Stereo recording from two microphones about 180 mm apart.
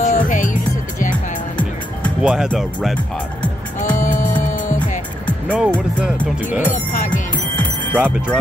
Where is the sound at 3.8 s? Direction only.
45° left (ahead or behind).